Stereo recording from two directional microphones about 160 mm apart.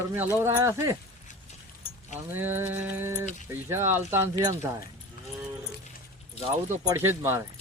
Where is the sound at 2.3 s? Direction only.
15° right (ahead or behind).